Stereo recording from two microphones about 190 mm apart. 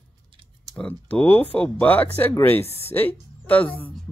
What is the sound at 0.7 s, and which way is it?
Speech, 5° left (ahead or behind).